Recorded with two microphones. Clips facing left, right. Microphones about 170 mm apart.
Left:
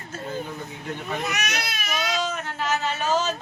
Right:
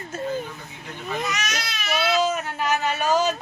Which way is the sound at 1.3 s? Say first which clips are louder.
Even; 60° left (ahead or behind).